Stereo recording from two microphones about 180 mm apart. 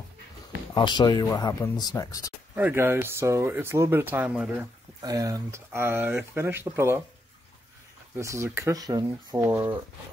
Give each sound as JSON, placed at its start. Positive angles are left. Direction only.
{"t": 0.7, "sound": "speech", "side_deg": 25}
{"t": 2.5, "sound": "speech", "side_deg": -10}
{"t": 5.0, "sound": "speech", "side_deg": -20}
{"t": 8.2, "sound": "speech", "side_deg": -15}